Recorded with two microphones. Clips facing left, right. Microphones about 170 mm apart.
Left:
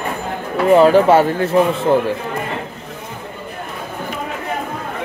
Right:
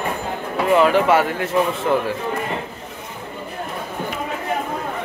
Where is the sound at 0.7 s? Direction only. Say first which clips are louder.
Left 5 dB; 35° left (ahead or behind).